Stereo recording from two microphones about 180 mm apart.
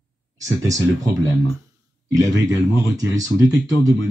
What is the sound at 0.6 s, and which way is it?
Speech, 20° right (ahead or behind).